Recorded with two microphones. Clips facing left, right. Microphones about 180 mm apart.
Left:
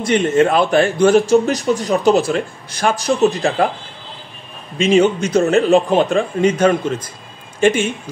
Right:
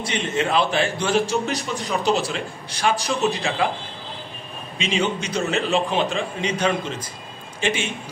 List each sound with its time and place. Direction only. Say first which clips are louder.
0.0 s speech: left 10 dB; 50° left (ahead or behind)
4.7 s speech: left 11 dB; 45° left (ahead or behind)